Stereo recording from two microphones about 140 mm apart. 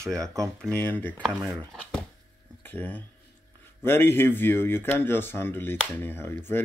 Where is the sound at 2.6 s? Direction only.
10° left (ahead or behind).